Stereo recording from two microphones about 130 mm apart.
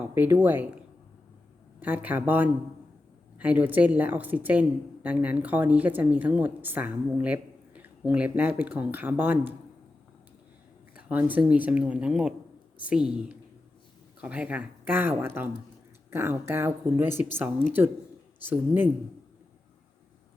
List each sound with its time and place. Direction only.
0.0 s speech: 15° right (ahead or behind)
1.8 s speech: 10° right (ahead or behind)
10.9 s speech: 10° right (ahead or behind)